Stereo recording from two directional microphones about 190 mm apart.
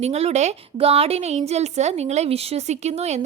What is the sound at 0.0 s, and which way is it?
A woman's voice, 35° right (ahead or behind).